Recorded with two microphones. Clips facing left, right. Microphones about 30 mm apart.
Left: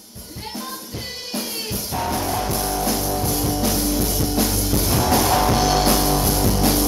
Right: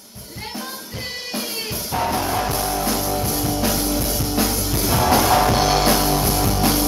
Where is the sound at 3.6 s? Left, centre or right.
Centre.